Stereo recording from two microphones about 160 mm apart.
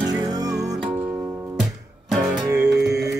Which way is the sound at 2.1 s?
Centre (ahead or behind).